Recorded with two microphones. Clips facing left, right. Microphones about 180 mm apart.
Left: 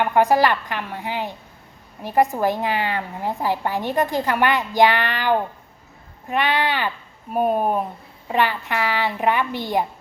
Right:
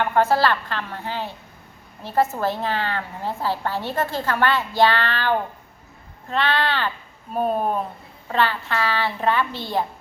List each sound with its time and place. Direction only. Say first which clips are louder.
0.0 s a woman's voice: left 2 dB; 15° left (ahead or behind)